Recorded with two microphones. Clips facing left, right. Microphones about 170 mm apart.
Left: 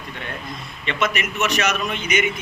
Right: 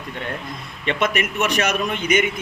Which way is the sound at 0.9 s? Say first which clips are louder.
Right 2 dB; 50° right (ahead or behind).